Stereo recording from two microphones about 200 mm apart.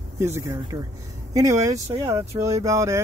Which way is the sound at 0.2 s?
10° right (ahead or behind).